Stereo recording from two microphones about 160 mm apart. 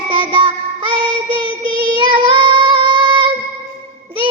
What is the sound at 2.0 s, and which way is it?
Child singing, 30° right (ahead or behind).